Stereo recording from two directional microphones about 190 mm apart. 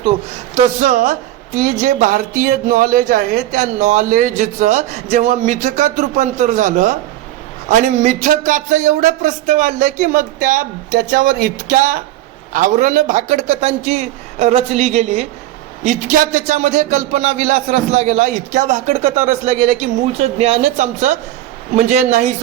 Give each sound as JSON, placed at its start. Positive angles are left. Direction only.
{"t": 0.5, "sound": "speech", "side_deg": -40}